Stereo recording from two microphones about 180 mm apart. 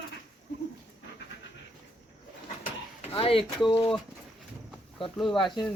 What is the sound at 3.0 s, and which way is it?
Speech, 30° left (ahead or behind).